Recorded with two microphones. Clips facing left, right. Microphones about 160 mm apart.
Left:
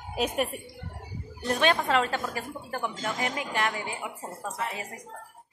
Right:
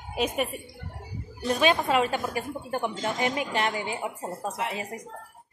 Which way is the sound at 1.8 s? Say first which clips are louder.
Right 2 dB; 15° right (ahead or behind).